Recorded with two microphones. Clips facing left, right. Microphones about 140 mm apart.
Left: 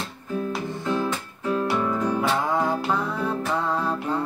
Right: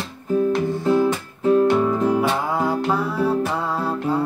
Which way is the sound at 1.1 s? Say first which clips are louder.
Right 8 dB; 25° right (ahead or behind).